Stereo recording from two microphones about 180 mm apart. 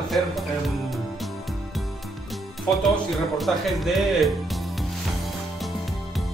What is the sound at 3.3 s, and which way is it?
Speech, centre (ahead or behind).